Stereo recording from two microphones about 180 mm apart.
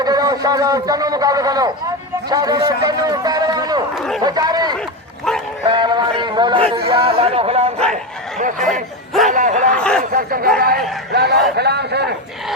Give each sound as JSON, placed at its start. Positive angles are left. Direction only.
{"t": 0.0, "sound": "a man's voice", "side_deg": -20}
{"t": 3.9, "sound": "chatter", "side_deg": 0}
{"t": 4.2, "sound": "a sound", "side_deg": -20}
{"t": 5.6, "sound": "music", "side_deg": -25}
{"t": 6.7, "sound": "speech", "side_deg": -30}
{"t": 8.4, "sound": "speech", "side_deg": -45}
{"t": 9.7, "sound": "speech", "side_deg": 5}
{"t": 10.1, "sound": "speech", "side_deg": -55}
{"t": 11.1, "sound": "a man's voice", "side_deg": -65}